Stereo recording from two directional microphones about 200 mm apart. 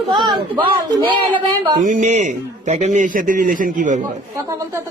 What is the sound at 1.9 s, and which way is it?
A man's voice, 35° right (ahead or behind).